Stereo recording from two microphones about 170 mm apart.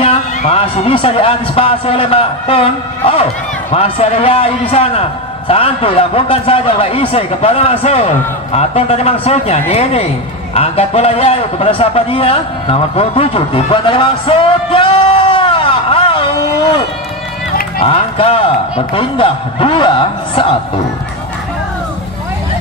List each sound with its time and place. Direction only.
0.0 s a man's voice: 35° left (ahead or behind)
17.8 s a man's voice: 35° left (ahead or behind)